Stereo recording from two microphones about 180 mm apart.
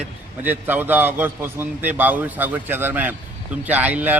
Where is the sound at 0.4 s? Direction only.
10° right (ahead or behind).